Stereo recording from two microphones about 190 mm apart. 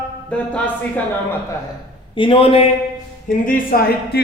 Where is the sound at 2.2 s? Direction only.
30° left (ahead or behind).